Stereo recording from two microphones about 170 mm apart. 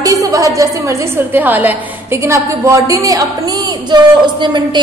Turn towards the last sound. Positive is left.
turn(degrees=-25)  # may be behind; listen again after turning